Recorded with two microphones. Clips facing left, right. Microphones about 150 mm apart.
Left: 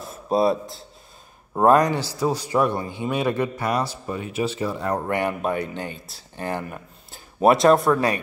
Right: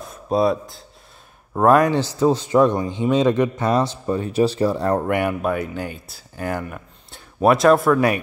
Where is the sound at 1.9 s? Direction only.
25° right (ahead or behind).